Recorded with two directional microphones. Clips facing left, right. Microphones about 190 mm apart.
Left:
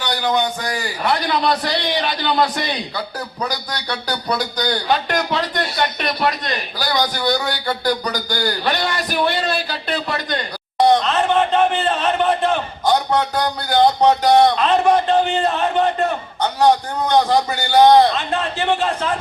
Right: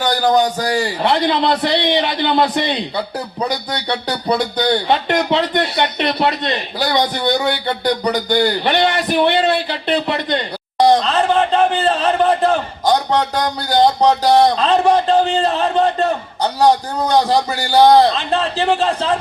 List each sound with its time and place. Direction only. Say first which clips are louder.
0.0 s speech: right 5 dB; 45° right (ahead or behind); by 10.4 s 25° right (ahead or behind)
10.8 s a man's voice: right 2 dB; 35° right (ahead or behind)